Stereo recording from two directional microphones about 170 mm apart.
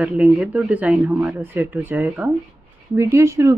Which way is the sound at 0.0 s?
10° right (ahead or behind).